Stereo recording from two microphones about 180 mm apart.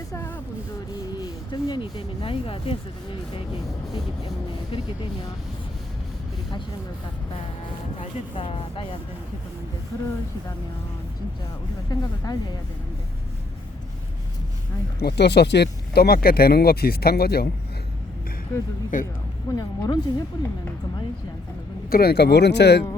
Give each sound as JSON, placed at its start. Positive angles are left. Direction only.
{"t": 0.1, "sound": "a sound", "side_deg": 10}
{"t": 1.5, "sound": "speech", "side_deg": 25}
{"t": 3.9, "sound": "speech", "side_deg": 20}
{"t": 7.9, "sound": "speech", "side_deg": 30}
{"t": 11.9, "sound": "speech", "side_deg": 20}
{"t": 14.9, "sound": "speech", "side_deg": 65}
{"t": 18.9, "sound": "speech", "side_deg": 50}
{"t": 19.5, "sound": "speech", "side_deg": 20}
{"t": 21.8, "sound": "speech", "side_deg": 55}